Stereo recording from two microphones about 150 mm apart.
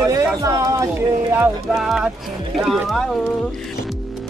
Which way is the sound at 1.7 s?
5° right (ahead or behind).